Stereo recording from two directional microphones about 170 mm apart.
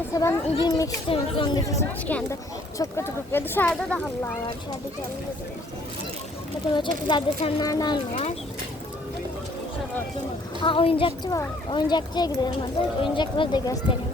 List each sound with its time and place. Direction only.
0.1 s speech: 20° left (ahead or behind)
0.4 s speech: 35° left (ahead or behind); by 4.0 s 5° left (ahead or behind)
6.7 s speech: 30° left (ahead or behind)
7.6 s speech: 20° left (ahead or behind)
10.6 s speech: 30° left (ahead or behind)